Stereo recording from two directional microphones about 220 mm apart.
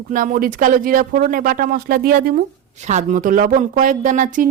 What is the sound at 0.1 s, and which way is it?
Speech, 40° right (ahead or behind).